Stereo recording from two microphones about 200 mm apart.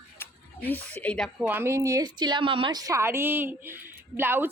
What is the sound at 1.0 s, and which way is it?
Speech, 5° left (ahead or behind).